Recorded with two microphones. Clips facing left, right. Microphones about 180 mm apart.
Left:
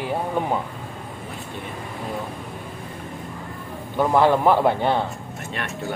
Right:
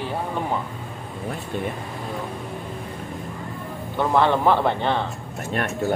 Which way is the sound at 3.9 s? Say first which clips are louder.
Left 2 dB; 10° left (ahead or behind).